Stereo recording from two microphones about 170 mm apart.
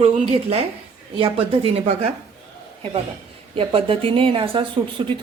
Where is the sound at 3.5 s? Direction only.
35° right (ahead or behind).